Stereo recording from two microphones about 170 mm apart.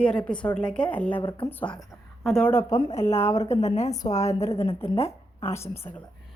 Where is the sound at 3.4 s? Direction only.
40° left (ahead or behind).